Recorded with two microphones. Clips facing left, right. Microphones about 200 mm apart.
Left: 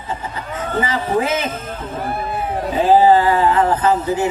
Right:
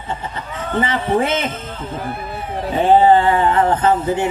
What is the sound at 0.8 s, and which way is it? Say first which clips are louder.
Speech: right 2 dB; 30° right (ahead or behind).